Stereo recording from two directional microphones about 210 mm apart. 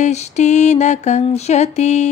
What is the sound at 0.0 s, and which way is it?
Mantra, 35° left (ahead or behind).